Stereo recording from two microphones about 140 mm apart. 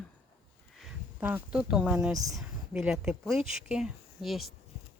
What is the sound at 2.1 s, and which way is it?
Speech, 25° right (ahead or behind).